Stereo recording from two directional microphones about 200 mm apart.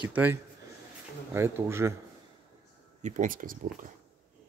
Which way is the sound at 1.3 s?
15° right (ahead or behind).